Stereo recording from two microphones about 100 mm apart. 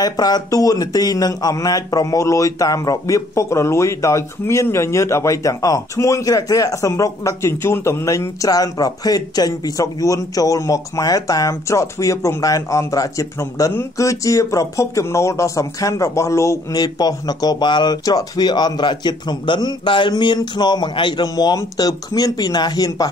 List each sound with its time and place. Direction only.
0.0 s speech: 40° left (ahead or behind)
16.7 s speech: 40° left (ahead or behind)